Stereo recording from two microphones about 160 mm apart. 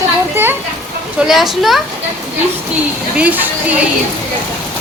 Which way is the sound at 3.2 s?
10° right (ahead or behind).